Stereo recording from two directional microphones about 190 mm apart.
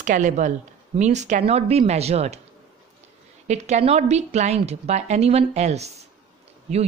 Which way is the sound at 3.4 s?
35° right (ahead or behind).